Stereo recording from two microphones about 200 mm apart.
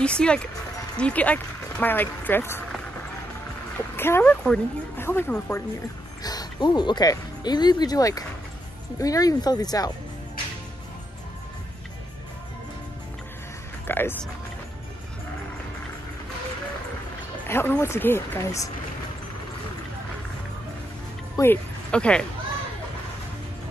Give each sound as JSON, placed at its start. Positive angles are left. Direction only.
{"t": 0.0, "sound": "a woman's voice", "side_deg": 5}
{"t": 3.9, "sound": "a woman's voice", "side_deg": 10}
{"t": 13.8, "sound": "music", "side_deg": 10}
{"t": 17.5, "sound": "a woman's voice", "side_deg": 10}
{"t": 21.4, "sound": "speech", "side_deg": 10}